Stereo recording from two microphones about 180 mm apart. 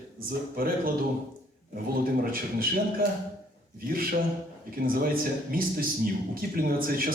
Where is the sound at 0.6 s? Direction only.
55° right (ahead or behind).